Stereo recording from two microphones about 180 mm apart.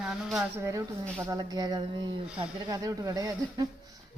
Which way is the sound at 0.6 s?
20° right (ahead or behind).